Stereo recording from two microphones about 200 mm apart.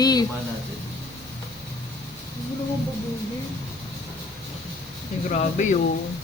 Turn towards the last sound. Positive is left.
turn(degrees=40)  # may be behind; listen again after turning